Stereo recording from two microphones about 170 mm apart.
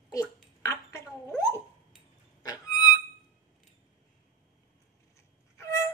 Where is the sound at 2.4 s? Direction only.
20° left (ahead or behind).